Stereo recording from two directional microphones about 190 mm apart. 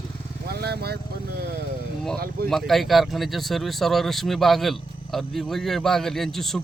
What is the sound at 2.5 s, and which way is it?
Speech, centre (ahead or behind).